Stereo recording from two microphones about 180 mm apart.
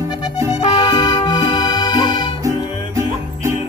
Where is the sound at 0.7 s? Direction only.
20° left (ahead or behind).